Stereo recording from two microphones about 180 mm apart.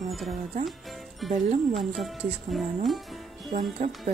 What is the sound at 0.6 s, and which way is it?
Music, centre (ahead or behind).